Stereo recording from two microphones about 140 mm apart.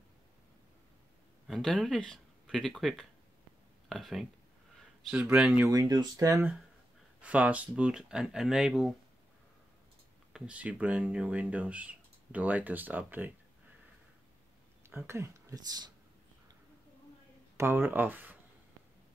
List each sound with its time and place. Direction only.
1.5 s speech: centre (ahead or behind)
5.7 s speech: 30° right (ahead or behind)
7.2 s speech: 10° right (ahead or behind)
10.3 s speech: 10° right (ahead or behind)
15.0 s speech: 20° right (ahead or behind)
17.6 s speech: 15° right (ahead or behind)